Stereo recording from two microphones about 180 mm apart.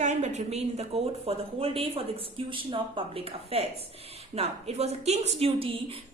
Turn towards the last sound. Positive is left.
turn(degrees=-35)  # may be behind; listen again after turning